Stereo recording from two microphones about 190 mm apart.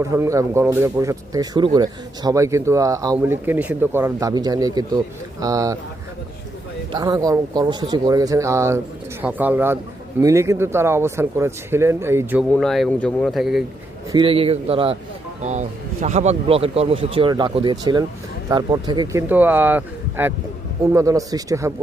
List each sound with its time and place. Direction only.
0.0 s speech: 15° right (ahead or behind)
6.9 s speech: 20° right (ahead or behind); by 13.7 s centre (ahead or behind)
14.1 s speech: 25° right (ahead or behind)
19.3 s speech: 10° right (ahead or behind)